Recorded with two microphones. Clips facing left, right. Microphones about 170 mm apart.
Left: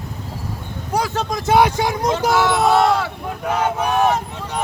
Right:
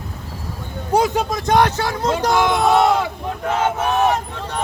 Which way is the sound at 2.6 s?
Centre (ahead or behind).